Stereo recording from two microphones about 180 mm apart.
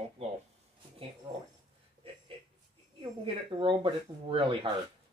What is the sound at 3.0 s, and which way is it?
Speech, 25° right (ahead or behind).